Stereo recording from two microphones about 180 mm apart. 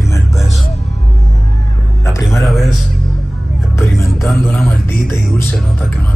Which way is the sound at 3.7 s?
15° left (ahead or behind).